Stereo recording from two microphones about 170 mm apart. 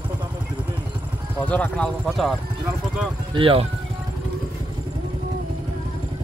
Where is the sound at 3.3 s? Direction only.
35° right (ahead or behind).